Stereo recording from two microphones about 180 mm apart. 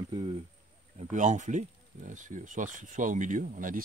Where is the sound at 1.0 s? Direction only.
45° right (ahead or behind).